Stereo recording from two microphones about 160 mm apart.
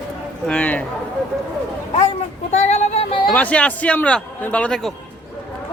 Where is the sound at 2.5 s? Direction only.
45° left (ahead or behind).